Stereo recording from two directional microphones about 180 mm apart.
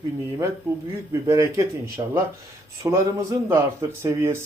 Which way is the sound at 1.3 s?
15° right (ahead or behind).